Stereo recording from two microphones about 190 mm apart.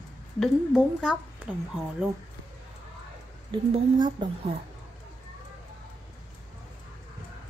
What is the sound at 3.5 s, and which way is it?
A woman's voice, 25° right (ahead or behind).